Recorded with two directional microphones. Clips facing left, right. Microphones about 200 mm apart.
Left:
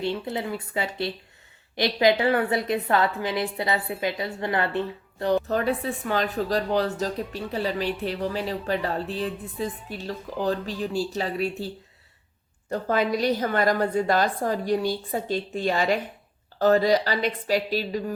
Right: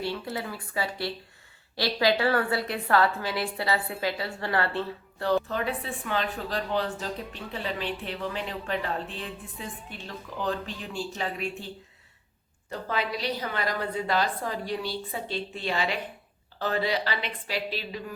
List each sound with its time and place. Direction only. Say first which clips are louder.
0.0 s a woman's voice: left 4 dB; 20° left (ahead or behind)
5.5 s speech: left 6 dB; 40° left (ahead or behind)
12.7 s a woman's voice: left 7 dB; 45° left (ahead or behind)